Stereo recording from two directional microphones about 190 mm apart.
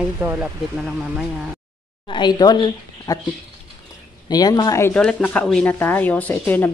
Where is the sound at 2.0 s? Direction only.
25° left (ahead or behind).